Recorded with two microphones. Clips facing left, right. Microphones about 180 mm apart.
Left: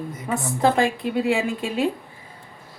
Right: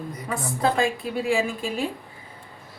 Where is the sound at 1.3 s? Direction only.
65° left (ahead or behind).